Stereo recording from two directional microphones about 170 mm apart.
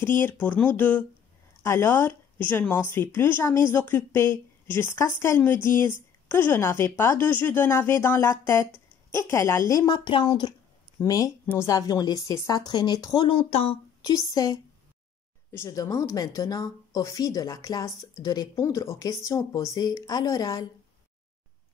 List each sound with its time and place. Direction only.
0.0 s speech: 10° left (ahead or behind)
13.4 s speech: 40° left (ahead or behind)
14.3 s speech: 20° left (ahead or behind)